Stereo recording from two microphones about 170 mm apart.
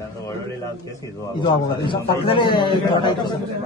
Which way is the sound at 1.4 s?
30° left (ahead or behind).